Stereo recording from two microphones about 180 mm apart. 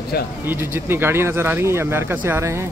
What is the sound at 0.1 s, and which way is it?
Speech, 60° left (ahead or behind).